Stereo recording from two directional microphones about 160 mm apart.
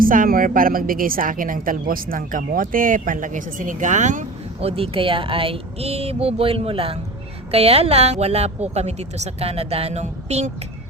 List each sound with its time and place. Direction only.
0.0 s a woman's voice: 60° right (ahead or behind)
4.7 s speech: 35° right (ahead or behind)